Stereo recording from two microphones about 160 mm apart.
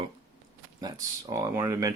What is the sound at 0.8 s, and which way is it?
Speech, 20° right (ahead or behind).